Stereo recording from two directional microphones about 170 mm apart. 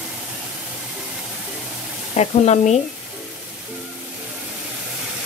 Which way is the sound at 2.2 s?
40° left (ahead or behind).